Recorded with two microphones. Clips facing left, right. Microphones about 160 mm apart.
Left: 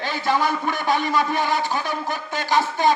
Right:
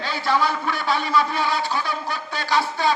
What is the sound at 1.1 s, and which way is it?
A man's voice, 45° left (ahead or behind).